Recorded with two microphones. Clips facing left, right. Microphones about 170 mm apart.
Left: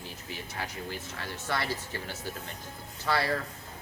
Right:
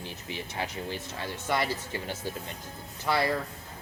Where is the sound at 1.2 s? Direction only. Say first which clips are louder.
Right 4 dB; 15° right (ahead or behind).